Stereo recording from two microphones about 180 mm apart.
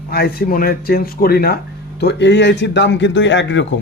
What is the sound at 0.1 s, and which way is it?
Speech, 60° left (ahead or behind).